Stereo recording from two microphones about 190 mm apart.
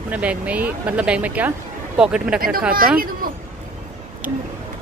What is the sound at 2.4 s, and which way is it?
Speech, 50° right (ahead or behind).